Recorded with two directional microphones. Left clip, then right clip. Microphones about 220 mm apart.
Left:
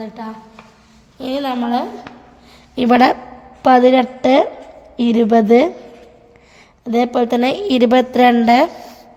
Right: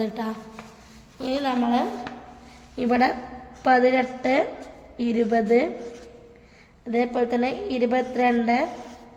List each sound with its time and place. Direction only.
0.0 s a woman's voice: centre (ahead or behind)
1.2 s a woman's voice: 35° left (ahead or behind)
6.8 s a woman's voice: 40° left (ahead or behind)